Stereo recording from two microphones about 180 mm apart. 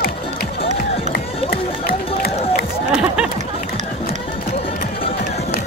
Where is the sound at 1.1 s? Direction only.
60° left (ahead or behind).